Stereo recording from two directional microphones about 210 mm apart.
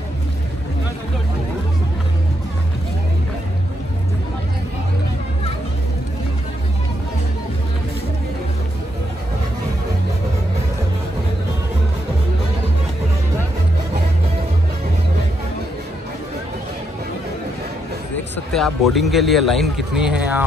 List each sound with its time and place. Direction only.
18.5 s a man's voice: centre (ahead or behind)